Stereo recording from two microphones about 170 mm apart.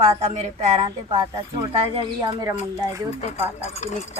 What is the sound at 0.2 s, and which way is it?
Speech, 40° right (ahead or behind).